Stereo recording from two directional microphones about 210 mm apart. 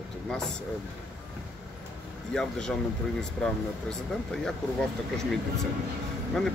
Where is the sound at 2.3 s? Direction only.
5° left (ahead or behind).